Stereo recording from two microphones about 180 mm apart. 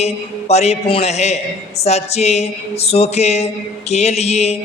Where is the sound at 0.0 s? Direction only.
35° left (ahead or behind).